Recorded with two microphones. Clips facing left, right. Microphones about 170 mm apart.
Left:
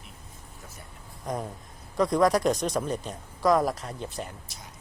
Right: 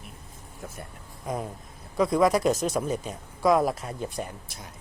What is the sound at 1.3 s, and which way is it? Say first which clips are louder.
Speech: right 1 dB; 5° right (ahead or behind).